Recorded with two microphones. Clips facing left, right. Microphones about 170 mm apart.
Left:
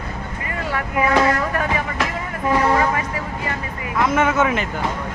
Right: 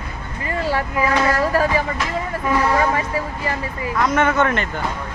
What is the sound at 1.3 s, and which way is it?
Speech, 30° right (ahead or behind).